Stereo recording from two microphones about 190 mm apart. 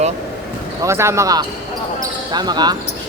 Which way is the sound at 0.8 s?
15° right (ahead or behind).